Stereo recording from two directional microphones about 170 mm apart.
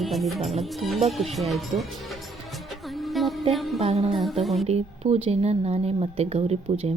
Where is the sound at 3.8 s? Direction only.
35° right (ahead or behind).